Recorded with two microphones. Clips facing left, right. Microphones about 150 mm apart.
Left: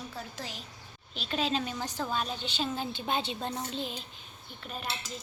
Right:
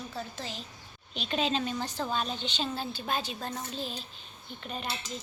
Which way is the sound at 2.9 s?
25° left (ahead or behind).